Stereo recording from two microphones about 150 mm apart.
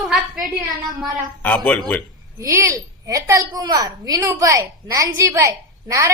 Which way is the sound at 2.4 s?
20° right (ahead or behind).